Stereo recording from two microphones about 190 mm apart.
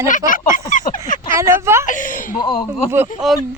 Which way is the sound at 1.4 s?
15° right (ahead or behind).